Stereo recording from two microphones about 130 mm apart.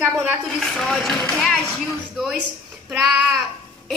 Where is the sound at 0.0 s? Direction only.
10° right (ahead or behind).